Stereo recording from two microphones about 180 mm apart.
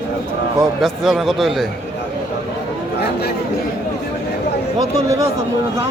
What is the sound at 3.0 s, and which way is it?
Chatter, 65° left (ahead or behind).